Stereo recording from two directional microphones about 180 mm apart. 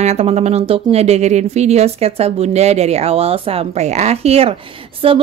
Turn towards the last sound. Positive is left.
turn(degrees=-30)  # may be behind; listen again after turning